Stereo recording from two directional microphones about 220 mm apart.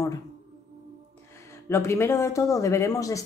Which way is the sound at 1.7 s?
10° left (ahead or behind).